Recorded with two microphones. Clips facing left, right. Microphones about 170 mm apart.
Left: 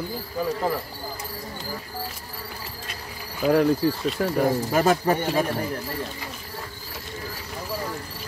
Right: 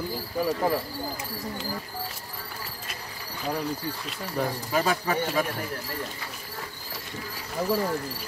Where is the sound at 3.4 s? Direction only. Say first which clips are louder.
Left 11 dB; 65° left (ahead or behind).